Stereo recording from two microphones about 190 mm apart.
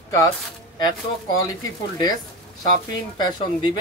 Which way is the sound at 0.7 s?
20° left (ahead or behind).